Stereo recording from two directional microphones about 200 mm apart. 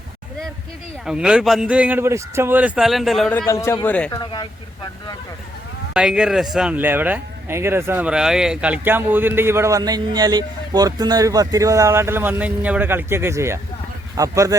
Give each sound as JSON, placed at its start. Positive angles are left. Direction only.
{"t": 1.0, "sound": "speech", "side_deg": -5}
{"t": 4.2, "sound": "speech", "side_deg": 20}
{"t": 5.9, "sound": "speech", "side_deg": -5}